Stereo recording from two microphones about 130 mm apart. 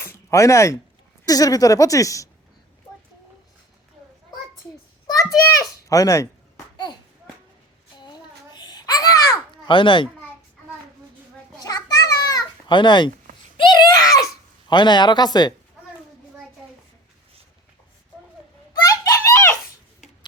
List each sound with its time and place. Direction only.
0.0 s a sound: 25° left (ahead or behind)
1.3 s speech: 30° left (ahead or behind)
5.8 s speech: 25° left (ahead or behind)
7.9 s babbling: 35° left (ahead or behind)
9.6 s speech: 40° left (ahead or behind)
11.6 s children playing: 30° left (ahead or behind)
13.6 s a sound: 35° left (ahead or behind)
14.7 s speech: 35° left (ahead or behind)
18.9 s screaming: 25° left (ahead or behind)